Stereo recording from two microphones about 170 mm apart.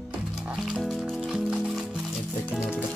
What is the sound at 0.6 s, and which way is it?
Music, centre (ahead or behind).